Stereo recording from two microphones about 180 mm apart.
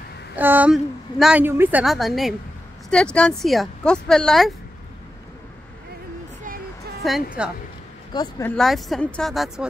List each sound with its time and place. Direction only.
0.4 s speech: 10° right (ahead or behind)
7.4 s speech: 5° right (ahead or behind)
8.1 s speech: 25° left (ahead or behind)
8.5 s speech: centre (ahead or behind)